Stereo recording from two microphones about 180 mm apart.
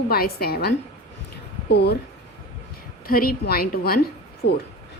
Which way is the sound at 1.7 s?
65° left (ahead or behind).